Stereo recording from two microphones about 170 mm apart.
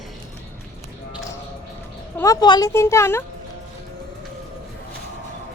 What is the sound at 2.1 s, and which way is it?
Speech, 20° left (ahead or behind).